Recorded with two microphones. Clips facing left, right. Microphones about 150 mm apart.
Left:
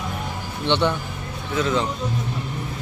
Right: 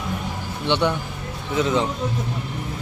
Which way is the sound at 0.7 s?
10° right (ahead or behind).